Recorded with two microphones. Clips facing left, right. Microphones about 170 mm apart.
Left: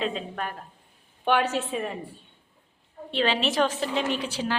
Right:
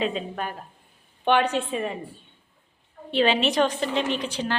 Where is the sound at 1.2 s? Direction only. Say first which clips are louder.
Right 2 dB; 5° left (ahead or behind).